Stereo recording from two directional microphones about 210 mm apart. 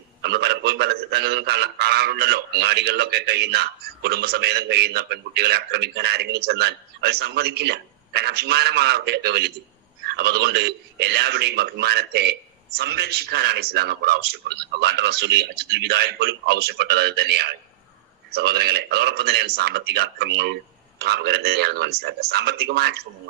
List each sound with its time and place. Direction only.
0.2 s a man's voice: 50° right (ahead or behind)